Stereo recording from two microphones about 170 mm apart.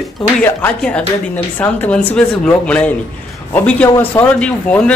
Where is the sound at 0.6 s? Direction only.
5° left (ahead or behind).